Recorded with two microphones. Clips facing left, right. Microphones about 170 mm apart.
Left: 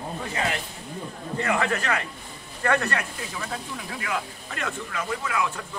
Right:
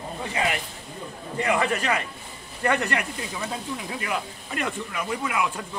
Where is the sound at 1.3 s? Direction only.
15° right (ahead or behind).